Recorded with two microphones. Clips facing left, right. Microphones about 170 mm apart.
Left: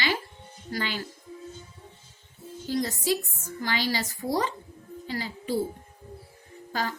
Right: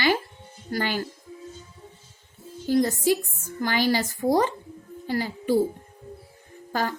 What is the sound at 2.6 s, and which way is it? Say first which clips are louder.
A woman's voice: right 6 dB; 45° right (ahead or behind).